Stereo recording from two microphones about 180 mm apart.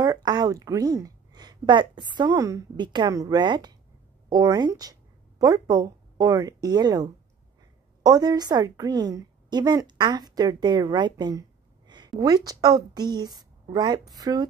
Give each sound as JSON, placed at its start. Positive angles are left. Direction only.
{"t": 0.0, "sound": "a woman's voice", "side_deg": -20}